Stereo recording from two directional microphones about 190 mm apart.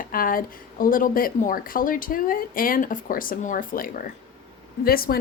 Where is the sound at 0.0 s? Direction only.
50° left (ahead or behind).